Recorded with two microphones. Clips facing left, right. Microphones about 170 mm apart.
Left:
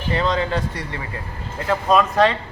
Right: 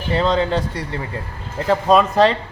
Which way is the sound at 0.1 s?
30° right (ahead or behind).